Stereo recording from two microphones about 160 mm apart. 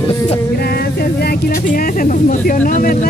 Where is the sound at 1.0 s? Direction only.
75° left (ahead or behind).